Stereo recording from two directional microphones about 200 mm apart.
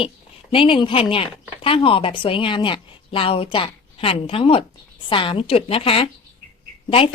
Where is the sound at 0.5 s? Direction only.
25° left (ahead or behind).